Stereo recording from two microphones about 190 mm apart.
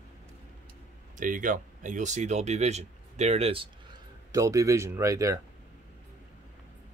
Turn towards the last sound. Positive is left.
turn(degrees=-15)  # may be behind; listen again after turning